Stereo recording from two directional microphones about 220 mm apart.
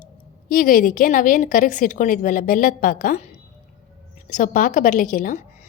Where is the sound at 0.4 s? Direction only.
40° left (ahead or behind).